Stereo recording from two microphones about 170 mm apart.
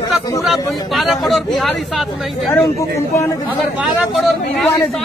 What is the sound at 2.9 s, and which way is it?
Speech, 15° left (ahead or behind).